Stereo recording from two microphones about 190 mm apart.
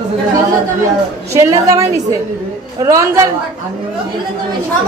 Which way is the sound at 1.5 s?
15° right (ahead or behind).